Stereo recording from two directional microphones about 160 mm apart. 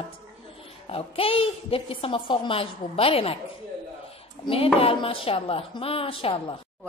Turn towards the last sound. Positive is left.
turn(degrees=35)  # may be behind; listen again after turning